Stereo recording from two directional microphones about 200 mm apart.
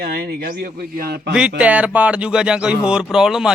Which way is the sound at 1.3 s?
5° right (ahead or behind).